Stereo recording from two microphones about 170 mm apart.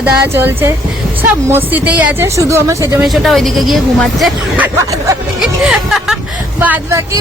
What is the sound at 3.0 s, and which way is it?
Speech, centre (ahead or behind).